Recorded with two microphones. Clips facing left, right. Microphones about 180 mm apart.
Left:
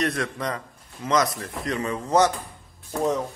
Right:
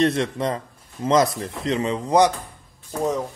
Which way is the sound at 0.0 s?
25° right (ahead or behind).